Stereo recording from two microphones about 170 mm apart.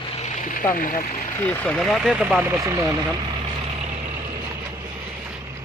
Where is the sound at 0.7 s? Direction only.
55° left (ahead or behind).